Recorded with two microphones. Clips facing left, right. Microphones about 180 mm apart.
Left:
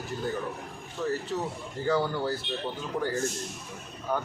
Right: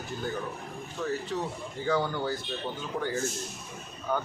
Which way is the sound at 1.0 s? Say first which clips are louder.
Left 1 dB; 5° left (ahead or behind).